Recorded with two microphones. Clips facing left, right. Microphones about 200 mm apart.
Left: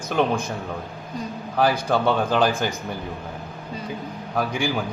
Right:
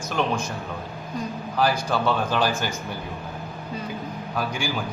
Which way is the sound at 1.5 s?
60° left (ahead or behind).